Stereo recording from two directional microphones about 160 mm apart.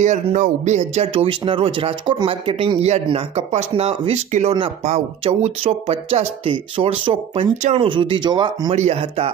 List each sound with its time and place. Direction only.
0.0 s speech: 50° right (ahead or behind); by 8.7 s 30° right (ahead or behind)
8.7 s speech: 40° right (ahead or behind)